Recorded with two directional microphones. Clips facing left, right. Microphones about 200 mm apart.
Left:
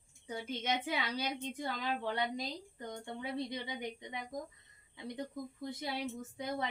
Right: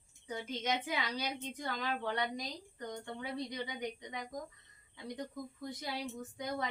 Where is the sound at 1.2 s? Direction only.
25° left (ahead or behind).